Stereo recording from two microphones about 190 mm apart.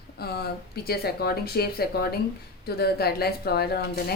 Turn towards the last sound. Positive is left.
turn(degrees=55)  # may be behind; listen again after turning